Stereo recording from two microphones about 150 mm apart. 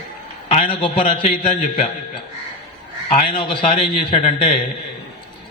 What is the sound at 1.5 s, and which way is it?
Speech, 60° left (ahead or behind).